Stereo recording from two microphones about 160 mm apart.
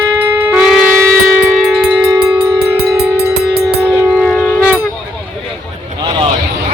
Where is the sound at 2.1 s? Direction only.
20° right (ahead or behind).